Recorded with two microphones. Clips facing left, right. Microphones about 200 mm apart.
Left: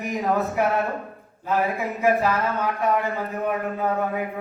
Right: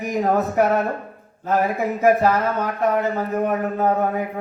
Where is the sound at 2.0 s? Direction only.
40° right (ahead or behind).